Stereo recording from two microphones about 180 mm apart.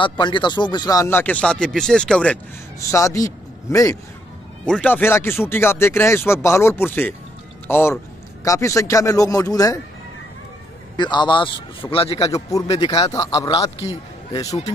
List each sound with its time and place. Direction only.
0.0 s speech: 25° left (ahead or behind); by 2.3 s 5° left (ahead or behind)
2.9 s speech: 15° left (ahead or behind)
4.6 s a man's voice: 5° left (ahead or behind)
11.0 s a man's voice: 25° left (ahead or behind)
12.4 s a man's voice: 20° left (ahead or behind)
13.8 s a man's voice: 40° left (ahead or behind)
14.3 s a man's voice: 20° left (ahead or behind)